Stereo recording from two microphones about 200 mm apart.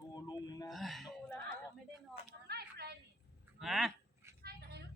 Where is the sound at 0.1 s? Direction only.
20° left (ahead or behind).